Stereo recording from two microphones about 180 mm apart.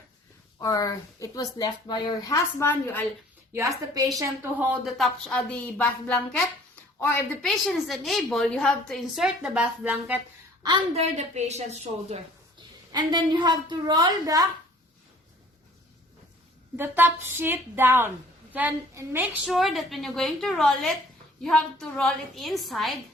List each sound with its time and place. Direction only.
0.6 s speech: 20° left (ahead or behind)
3.5 s a woman's voice: 15° right (ahead or behind)
4.7 s a woman's voice: centre (ahead or behind)
7.6 s a woman's voice: centre (ahead or behind)
10.6 s a woman's voice: 25° right (ahead or behind)
12.9 s a woman's voice: 25° right (ahead or behind)
16.7 s a woman's voice: 10° right (ahead or behind)